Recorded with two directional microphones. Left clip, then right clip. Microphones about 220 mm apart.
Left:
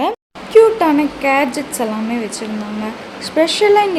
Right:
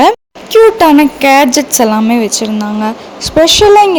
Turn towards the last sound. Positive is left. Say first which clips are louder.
# right 7 dB
turn(degrees=-30)  # may be behind; listen again after turning